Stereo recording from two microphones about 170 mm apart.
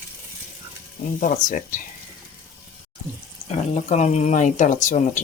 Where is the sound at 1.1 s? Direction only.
50° left (ahead or behind).